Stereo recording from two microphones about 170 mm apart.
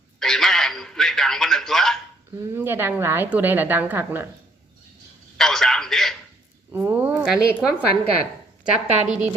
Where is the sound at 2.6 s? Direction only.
15° right (ahead or behind).